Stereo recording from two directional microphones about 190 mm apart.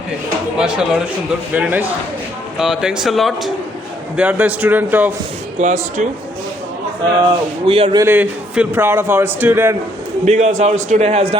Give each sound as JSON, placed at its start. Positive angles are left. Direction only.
{"t": 0.6, "sound": "a man's voice", "side_deg": -5}
{"t": 5.5, "sound": "a man's voice", "side_deg": -40}
{"t": 7.2, "sound": "speech", "side_deg": -25}
{"t": 8.0, "sound": "a man's voice", "side_deg": -10}
{"t": 10.2, "sound": "a man's voice", "side_deg": -35}